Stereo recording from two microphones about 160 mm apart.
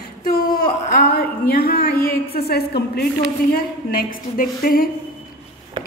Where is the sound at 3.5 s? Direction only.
65° left (ahead or behind).